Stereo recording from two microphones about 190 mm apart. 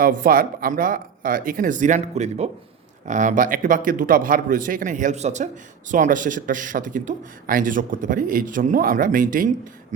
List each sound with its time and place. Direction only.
0.0 s a man's voice: 50° right (ahead or behind)